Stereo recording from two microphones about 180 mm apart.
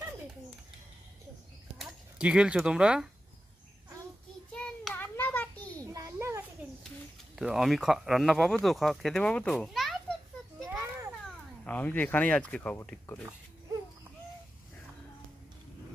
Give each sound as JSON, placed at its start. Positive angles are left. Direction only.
{"t": 1.8, "sound": "speech", "side_deg": -5}
{"t": 4.5, "sound": "a sound", "side_deg": 5}
{"t": 5.9, "sound": "children playing", "side_deg": -15}
{"t": 7.3, "sound": "speech", "side_deg": 0}
{"t": 11.6, "sound": "speech", "side_deg": 10}